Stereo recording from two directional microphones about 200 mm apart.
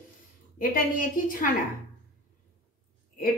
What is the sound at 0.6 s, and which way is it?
Speech, 45° left (ahead or behind).